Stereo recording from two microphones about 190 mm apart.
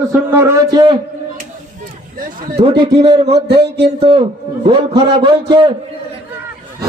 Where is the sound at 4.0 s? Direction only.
30° right (ahead or behind).